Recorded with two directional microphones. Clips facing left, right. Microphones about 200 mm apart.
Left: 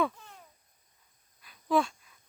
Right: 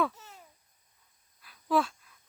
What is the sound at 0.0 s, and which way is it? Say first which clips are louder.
Babbling: even; 5° right (ahead or behind).